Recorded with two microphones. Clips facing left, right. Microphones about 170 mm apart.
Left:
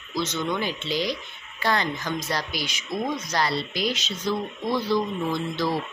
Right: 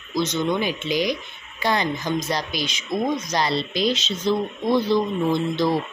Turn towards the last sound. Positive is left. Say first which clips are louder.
# right 5 dB
turn(degrees=-20)  # may be behind; listen again after turning